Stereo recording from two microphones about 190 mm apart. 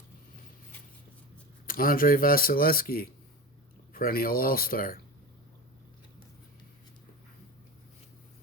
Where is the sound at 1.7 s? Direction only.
50° left (ahead or behind).